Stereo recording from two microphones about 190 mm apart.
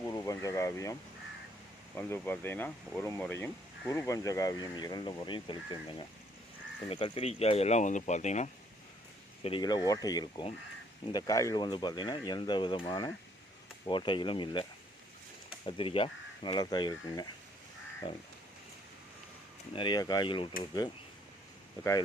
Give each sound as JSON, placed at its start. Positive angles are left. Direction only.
{"t": 0.0, "sound": "speech", "side_deg": 15}
{"t": 2.0, "sound": "speech", "side_deg": 10}
{"t": 9.4, "sound": "speech", "side_deg": 25}
{"t": 15.6, "sound": "speech", "side_deg": 30}
{"t": 19.7, "sound": "speech", "side_deg": 25}